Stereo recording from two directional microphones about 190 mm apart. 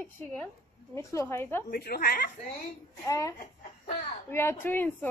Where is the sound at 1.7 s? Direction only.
55° left (ahead or behind).